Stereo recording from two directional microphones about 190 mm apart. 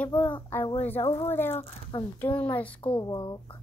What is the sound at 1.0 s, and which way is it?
Speech, 30° left (ahead or behind).